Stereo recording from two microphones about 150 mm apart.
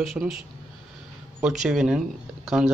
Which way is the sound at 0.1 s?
5° right (ahead or behind).